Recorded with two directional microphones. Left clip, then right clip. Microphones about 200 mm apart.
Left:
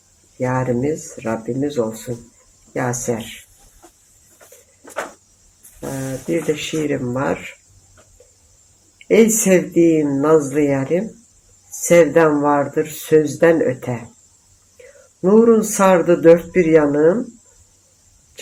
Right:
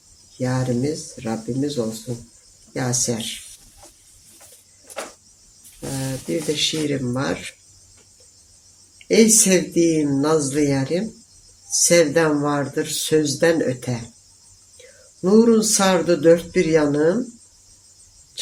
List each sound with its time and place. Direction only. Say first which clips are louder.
0.3 s speech: left 4 dB; 15° right (ahead or behind)
6.5 s speech: right 2 dB; 15° right (ahead or behind)
9.0 s speech: left 2 dB; 15° right (ahead or behind)
15.2 s speech: left 3 dB; 15° right (ahead or behind)